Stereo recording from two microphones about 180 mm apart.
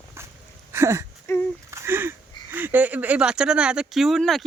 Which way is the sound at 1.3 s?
15° left (ahead or behind).